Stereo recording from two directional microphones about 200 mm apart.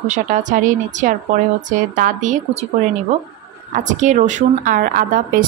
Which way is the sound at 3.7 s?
40° right (ahead or behind).